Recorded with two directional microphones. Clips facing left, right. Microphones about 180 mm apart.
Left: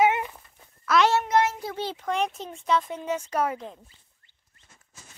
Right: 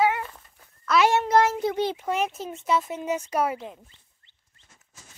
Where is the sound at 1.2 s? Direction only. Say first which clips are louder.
Right 3 dB; 35° right (ahead or behind).